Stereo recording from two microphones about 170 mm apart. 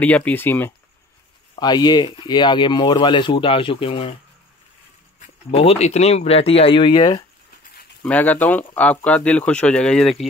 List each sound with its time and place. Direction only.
0.0 s speech: 10° left (ahead or behind)
1.5 s speech: 25° left (ahead or behind)
5.2 s speech: 35° left (ahead or behind)
8.0 s speech: 10° left (ahead or behind)